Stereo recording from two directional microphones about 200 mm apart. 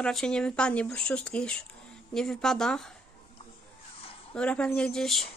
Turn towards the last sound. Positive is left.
turn(degrees=0)  # may be behind; listen again after turning